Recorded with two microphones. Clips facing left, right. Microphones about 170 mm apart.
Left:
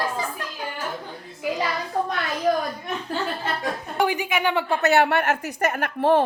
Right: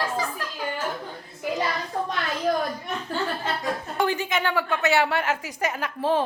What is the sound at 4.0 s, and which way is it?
Speech, 15° left (ahead or behind).